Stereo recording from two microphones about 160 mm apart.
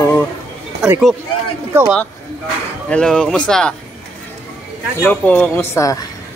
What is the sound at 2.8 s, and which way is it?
Speech, 5° left (ahead or behind).